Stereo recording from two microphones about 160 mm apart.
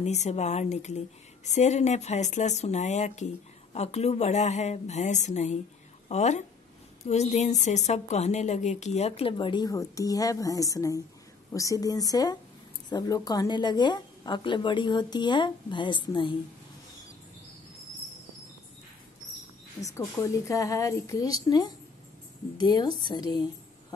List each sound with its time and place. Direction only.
0.0 s a woman's voice: 45° left (ahead or behind)
20.2 s a woman's voice: 20° left (ahead or behind)